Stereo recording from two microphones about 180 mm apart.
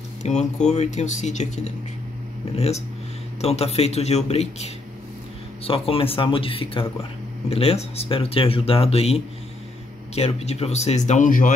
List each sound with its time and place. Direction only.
0.2 s speech: 40° left (ahead or behind)